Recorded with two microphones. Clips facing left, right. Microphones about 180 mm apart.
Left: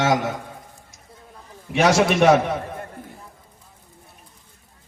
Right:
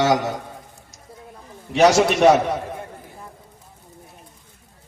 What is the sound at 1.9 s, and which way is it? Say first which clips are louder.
Speech: right 1 dB; 55° left (ahead or behind).